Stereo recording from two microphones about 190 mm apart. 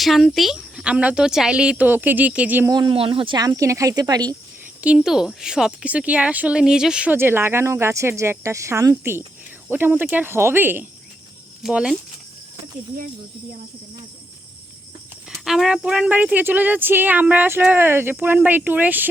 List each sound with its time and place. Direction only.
0.0 s speech: centre (ahead or behind)
2.7 s speech: 25° right (ahead or behind)
4.8 s speech: 5° right (ahead or behind)
15.3 s speech: centre (ahead or behind)